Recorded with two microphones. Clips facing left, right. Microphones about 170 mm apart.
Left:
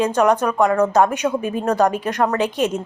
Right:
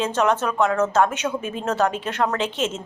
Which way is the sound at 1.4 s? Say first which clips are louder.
Left 6 dB; 60° left (ahead or behind).